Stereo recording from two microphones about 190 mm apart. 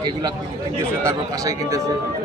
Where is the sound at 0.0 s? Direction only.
20° right (ahead or behind).